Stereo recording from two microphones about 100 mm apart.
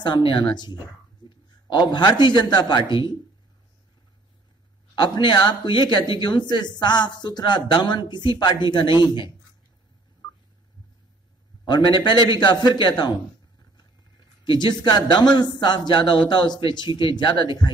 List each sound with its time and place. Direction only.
0.0 s a man's voice: 50° left (ahead or behind)
4.9 s a man's voice: 45° left (ahead or behind)
11.6 s a man's voice: 50° left (ahead or behind)
14.4 s a man's voice: 50° left (ahead or behind)